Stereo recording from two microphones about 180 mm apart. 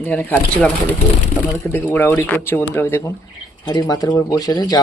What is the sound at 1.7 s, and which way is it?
Speech, 10° left (ahead or behind).